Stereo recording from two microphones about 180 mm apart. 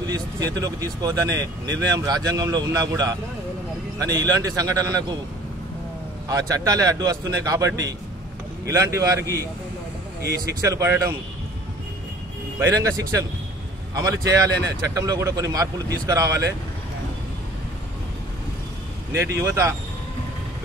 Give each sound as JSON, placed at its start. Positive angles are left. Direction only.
{"t": 0.0, "sound": "a man's voice", "side_deg": -20}
{"t": 6.2, "sound": "a man's voice", "side_deg": -20}
{"t": 10.6, "sound": "a man's voice", "side_deg": -15}
{"t": 12.5, "sound": "a man's voice", "side_deg": -15}
{"t": 19.1, "sound": "a man's voice", "side_deg": -15}